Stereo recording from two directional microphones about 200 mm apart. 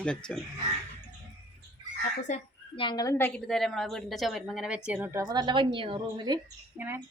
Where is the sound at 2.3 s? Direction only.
35° left (ahead or behind).